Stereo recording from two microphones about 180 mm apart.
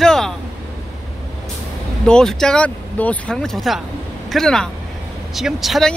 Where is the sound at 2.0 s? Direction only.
5° left (ahead or behind).